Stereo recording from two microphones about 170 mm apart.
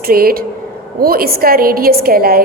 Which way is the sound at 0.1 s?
60° right (ahead or behind).